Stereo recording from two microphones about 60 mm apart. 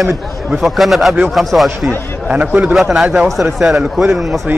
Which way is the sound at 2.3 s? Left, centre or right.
Right.